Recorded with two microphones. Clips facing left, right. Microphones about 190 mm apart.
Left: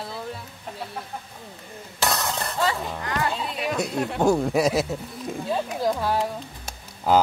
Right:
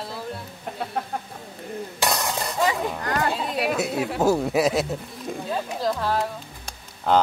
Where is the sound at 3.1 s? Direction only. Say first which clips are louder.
Right 1 dB; 40° right (ahead or behind).